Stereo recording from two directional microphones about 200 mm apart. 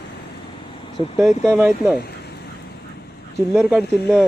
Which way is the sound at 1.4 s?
10° right (ahead or behind).